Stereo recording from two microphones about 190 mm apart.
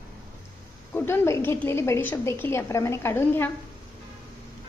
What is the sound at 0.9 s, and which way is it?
A woman's voice, 15° left (ahead or behind).